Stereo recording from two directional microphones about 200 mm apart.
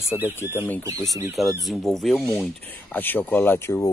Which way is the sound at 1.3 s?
Centre (ahead or behind).